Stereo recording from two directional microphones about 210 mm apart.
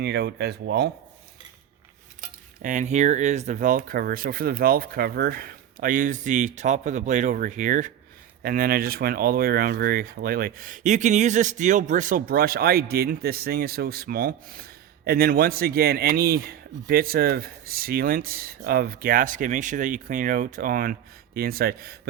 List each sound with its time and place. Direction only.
0.0 s speech: 55° right (ahead or behind)
2.6 s speech: 35° right (ahead or behind)